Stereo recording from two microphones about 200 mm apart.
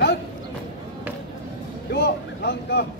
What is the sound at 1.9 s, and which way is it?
Boat, 55° left (ahead or behind).